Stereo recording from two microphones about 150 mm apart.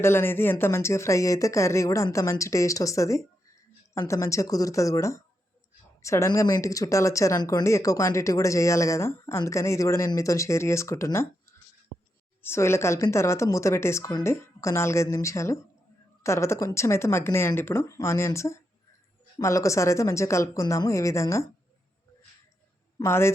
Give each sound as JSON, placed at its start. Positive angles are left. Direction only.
{"t": 0.0, "sound": "speech", "side_deg": 15}
{"t": 12.4, "sound": "speech", "side_deg": 15}
{"t": 23.0, "sound": "speech", "side_deg": 15}